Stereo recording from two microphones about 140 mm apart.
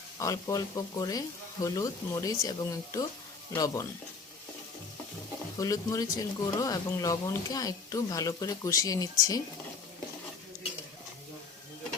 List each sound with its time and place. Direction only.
0.2 s speech: 25° left (ahead or behind)
5.5 s speech: 25° left (ahead or behind)